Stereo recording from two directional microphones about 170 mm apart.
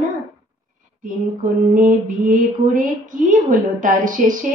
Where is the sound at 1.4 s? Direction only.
50° right (ahead or behind).